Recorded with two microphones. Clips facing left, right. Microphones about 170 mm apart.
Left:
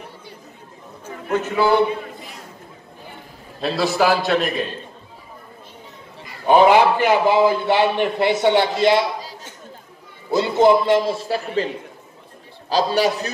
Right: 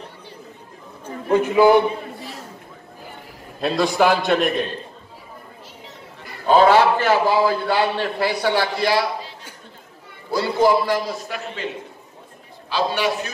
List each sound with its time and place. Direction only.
1.3 s a man's voice: 10° right (ahead or behind)
3.6 s a man's voice: 5° left (ahead or behind)
6.4 s a man's voice: 15° left (ahead or behind)
10.3 s a man's voice: 20° left (ahead or behind); by 13.3 s 40° left (ahead or behind)